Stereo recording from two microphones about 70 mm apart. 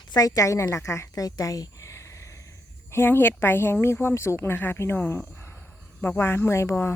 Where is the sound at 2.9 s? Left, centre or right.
Left.